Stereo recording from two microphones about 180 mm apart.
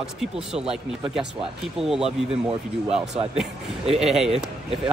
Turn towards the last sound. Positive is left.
turn(degrees=0)  # may be behind; listen again after turning